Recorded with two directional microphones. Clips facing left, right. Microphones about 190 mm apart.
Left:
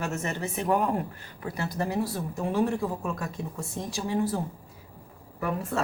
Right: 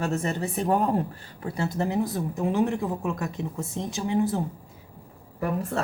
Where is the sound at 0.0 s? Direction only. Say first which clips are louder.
Right 4 dB; 35° right (ahead or behind).